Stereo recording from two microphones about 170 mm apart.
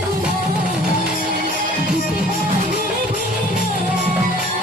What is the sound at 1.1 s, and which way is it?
Music, 55° right (ahead or behind).